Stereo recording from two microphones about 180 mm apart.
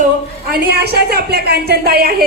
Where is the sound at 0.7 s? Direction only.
60° right (ahead or behind).